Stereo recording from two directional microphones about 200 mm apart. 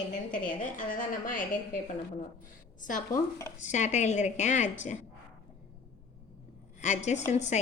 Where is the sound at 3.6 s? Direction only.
35° left (ahead or behind).